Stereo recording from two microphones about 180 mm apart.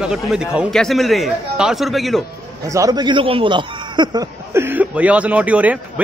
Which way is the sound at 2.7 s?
20° right (ahead or behind).